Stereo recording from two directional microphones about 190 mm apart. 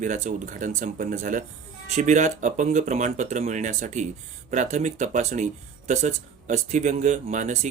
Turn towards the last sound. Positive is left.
turn(degrees=-40)  # may be behind; listen again after turning